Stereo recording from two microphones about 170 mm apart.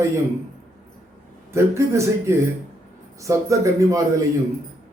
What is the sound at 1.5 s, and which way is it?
A man's voice, 15° right (ahead or behind).